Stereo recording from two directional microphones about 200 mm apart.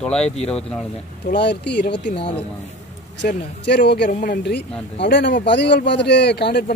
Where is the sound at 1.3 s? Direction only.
55° left (ahead or behind).